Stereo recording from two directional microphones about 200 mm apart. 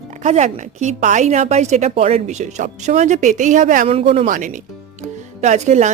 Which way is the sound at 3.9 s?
30° right (ahead or behind).